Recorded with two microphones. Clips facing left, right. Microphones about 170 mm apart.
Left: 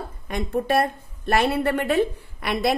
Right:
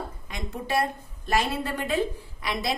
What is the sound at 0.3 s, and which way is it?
A woman's voice, 55° left (ahead or behind).